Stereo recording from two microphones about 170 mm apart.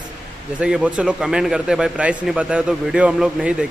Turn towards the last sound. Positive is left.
turn(degrees=-5)  # may be behind; listen again after turning